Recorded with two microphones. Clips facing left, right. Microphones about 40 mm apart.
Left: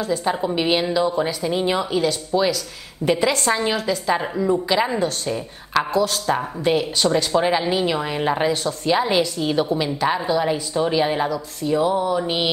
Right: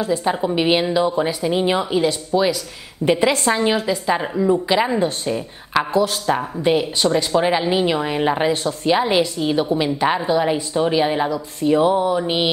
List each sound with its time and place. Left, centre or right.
0.0 s speech: centre
4.9 s speech: right
5.3 s speech: centre
5.9 s speech: right
6.2 s speech: centre
11.6 s speech: right
12.2 s speech: centre